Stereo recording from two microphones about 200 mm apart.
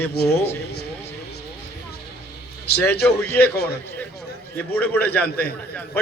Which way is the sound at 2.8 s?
10° left (ahead or behind).